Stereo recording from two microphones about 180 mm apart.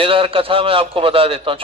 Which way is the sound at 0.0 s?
30° right (ahead or behind).